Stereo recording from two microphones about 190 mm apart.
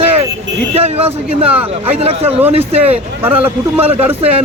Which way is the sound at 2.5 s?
35° right (ahead or behind).